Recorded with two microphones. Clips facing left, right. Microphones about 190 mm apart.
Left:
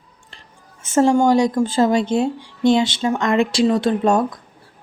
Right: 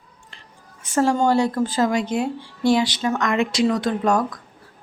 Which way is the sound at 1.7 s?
30° left (ahead or behind).